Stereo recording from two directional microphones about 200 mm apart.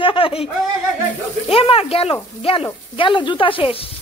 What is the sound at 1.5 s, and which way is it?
A woman's voice, 30° left (ahead or behind).